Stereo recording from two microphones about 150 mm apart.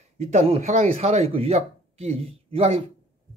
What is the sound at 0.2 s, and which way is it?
Speech, 45° right (ahead or behind).